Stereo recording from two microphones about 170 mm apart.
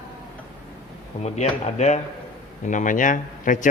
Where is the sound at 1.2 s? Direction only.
40° left (ahead or behind).